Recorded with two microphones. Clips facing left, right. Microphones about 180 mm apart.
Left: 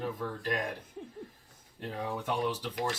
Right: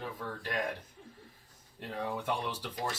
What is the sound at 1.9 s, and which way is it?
Speech, 5° left (ahead or behind).